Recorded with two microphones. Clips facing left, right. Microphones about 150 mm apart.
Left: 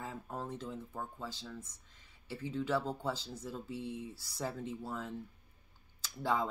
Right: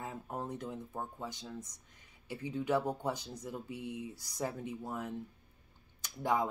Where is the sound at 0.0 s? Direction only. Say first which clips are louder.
Right 1 dB; 20° right (ahead or behind).